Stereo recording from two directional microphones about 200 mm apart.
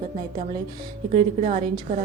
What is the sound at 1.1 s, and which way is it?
Speech, 30° right (ahead or behind).